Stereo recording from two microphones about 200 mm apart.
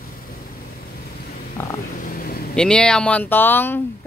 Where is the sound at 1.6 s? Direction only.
10° left (ahead or behind).